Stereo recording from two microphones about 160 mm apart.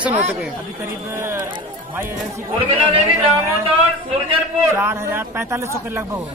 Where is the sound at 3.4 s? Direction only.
15° right (ahead or behind).